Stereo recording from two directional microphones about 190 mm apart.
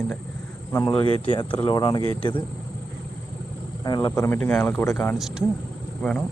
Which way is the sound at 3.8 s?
20° left (ahead or behind).